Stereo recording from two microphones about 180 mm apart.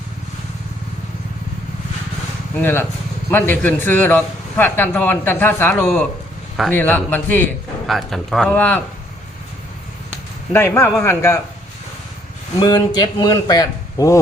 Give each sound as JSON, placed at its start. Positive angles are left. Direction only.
{"t": 2.6, "sound": "a man's voice", "side_deg": 10}
{"t": 10.5, "sound": "a man's voice", "side_deg": 15}
{"t": 12.5, "sound": "speech", "side_deg": 20}